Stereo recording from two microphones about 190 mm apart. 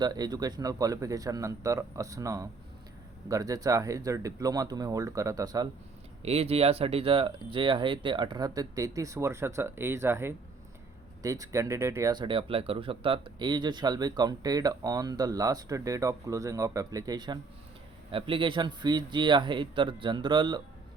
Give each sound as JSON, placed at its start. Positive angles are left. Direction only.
{"t": 0.0, "sound": "speech", "side_deg": -20}
{"t": 6.2, "sound": "speech", "side_deg": -30}